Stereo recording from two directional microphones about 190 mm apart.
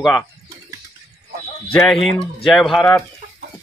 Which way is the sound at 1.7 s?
Centre (ahead or behind).